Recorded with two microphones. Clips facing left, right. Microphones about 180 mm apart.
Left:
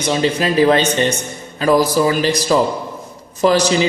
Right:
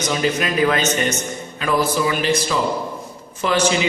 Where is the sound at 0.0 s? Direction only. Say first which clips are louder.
Left 4 dB; 30° left (ahead or behind).